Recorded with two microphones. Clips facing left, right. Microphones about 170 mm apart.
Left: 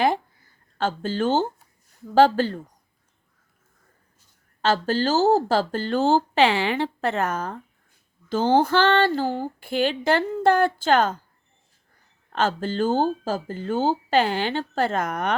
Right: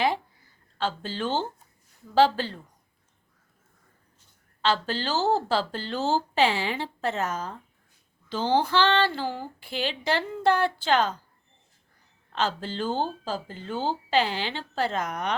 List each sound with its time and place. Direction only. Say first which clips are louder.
0.8 s speech: left 5 dB; 50° left (ahead or behind)
4.6 s a woman's voice: left 5 dB; 45° left (ahead or behind)
12.3 s speech: left 5 dB; 50° left (ahead or behind)